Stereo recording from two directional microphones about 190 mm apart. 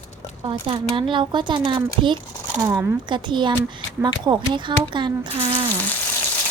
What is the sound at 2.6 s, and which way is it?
Speech, 10° right (ahead or behind).